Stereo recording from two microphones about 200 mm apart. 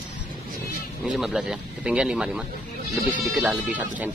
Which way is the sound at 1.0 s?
5° right (ahead or behind).